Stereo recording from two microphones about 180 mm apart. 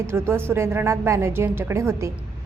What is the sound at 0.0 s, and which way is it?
A woman's voice, 15° right (ahead or behind).